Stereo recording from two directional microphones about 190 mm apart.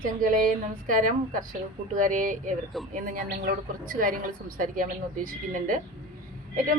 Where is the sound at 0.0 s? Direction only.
45° right (ahead or behind).